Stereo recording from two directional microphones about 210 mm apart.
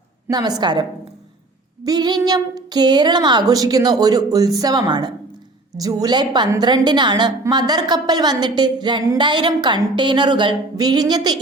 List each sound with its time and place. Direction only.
0.3 s a woman's voice: 20° right (ahead or behind)